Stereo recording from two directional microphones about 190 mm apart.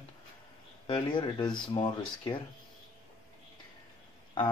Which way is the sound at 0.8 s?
25° left (ahead or behind).